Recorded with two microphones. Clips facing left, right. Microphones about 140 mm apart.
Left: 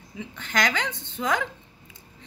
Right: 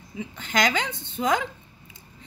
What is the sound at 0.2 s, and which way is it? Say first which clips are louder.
A woman's voice: right 2 dB; 15° right (ahead or behind).